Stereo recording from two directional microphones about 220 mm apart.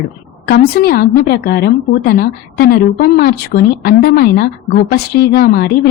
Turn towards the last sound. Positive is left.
turn(degrees=45)  # may be behind; listen again after turning